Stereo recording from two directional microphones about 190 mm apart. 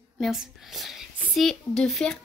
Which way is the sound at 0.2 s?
Centre (ahead or behind).